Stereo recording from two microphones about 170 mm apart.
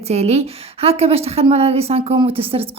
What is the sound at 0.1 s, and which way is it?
A woman's voice, 40° right (ahead or behind).